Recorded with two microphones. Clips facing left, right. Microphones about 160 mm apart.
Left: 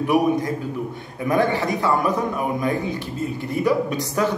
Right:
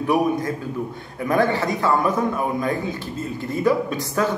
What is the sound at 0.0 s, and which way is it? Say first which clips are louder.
A man's voice: left 1 dB; 15° left (ahead or behind).